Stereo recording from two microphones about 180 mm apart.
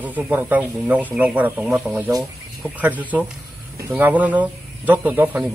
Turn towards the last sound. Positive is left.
turn(degrees=-10)  # may be behind; listen again after turning